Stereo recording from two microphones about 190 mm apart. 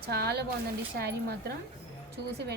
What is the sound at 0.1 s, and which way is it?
A woman's voice, 55° right (ahead or behind).